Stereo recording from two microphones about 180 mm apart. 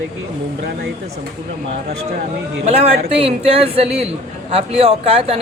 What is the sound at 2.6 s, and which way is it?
A man's voice, 35° right (ahead or behind).